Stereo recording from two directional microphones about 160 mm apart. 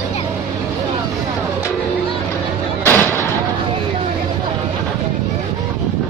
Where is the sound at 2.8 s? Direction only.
15° left (ahead or behind).